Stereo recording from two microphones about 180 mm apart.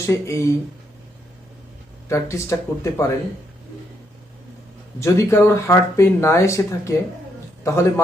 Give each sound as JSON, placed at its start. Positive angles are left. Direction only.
{"t": 0.0, "sound": "speech", "side_deg": 15}
{"t": 2.0, "sound": "speech", "side_deg": 15}
{"t": 4.9, "sound": "speech", "side_deg": 15}